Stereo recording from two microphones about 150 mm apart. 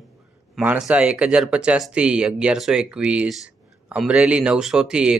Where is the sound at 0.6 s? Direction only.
5° right (ahead or behind).